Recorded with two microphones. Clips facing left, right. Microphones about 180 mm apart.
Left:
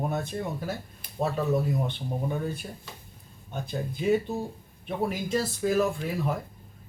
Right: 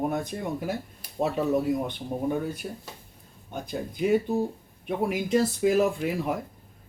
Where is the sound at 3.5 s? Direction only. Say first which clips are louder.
Even; 10° right (ahead or behind).